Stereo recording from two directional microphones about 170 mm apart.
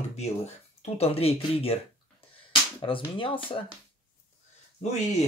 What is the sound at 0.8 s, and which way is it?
Speech, 35° left (ahead or behind).